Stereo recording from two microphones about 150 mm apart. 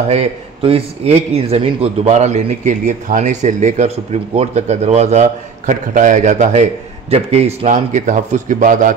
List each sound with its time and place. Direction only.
0.1 s a man's voice: 40° right (ahead or behind); by 8.9 s 60° right (ahead or behind)